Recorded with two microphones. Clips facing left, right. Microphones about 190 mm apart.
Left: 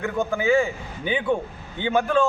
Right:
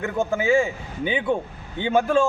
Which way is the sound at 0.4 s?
25° right (ahead or behind).